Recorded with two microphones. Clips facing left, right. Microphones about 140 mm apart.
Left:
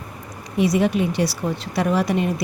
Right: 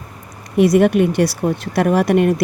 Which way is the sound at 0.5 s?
60° right (ahead or behind).